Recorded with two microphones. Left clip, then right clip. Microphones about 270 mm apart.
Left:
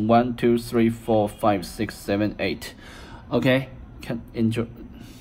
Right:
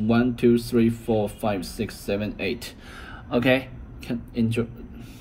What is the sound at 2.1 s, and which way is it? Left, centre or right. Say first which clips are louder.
Speech: left 4 dB; left.